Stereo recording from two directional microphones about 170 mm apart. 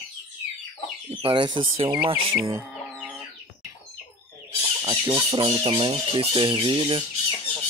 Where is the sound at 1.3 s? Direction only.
25° right (ahead or behind).